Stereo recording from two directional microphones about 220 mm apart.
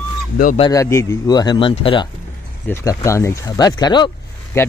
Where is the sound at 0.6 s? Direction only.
15° left (ahead or behind).